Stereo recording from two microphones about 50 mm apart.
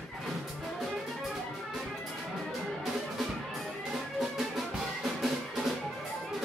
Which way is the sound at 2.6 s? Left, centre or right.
Centre.